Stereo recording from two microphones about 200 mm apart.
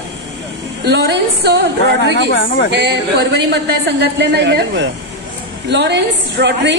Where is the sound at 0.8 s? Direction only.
55° right (ahead or behind).